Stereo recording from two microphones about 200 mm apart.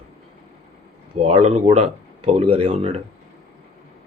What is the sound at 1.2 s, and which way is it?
Speech, 30° right (ahead or behind).